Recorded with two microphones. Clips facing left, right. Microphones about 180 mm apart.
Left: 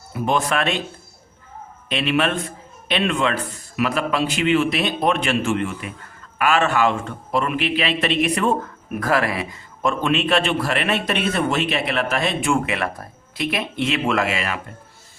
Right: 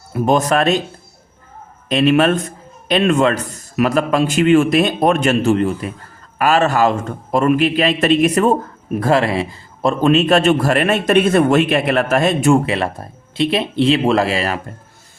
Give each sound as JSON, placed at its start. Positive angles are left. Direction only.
{"t": 0.1, "sound": "a man's voice", "side_deg": -45}
{"t": 1.9, "sound": "a man's voice", "side_deg": -40}
{"t": 8.9, "sound": "a man's voice", "side_deg": -30}